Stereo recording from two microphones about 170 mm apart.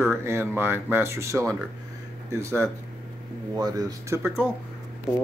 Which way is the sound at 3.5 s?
20° right (ahead or behind).